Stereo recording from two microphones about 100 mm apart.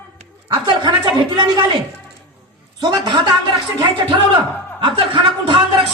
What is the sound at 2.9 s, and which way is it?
A man's voice, 50° right (ahead or behind).